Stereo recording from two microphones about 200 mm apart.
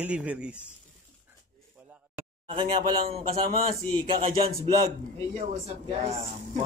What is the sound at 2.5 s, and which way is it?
A man's voice, 30° right (ahead or behind).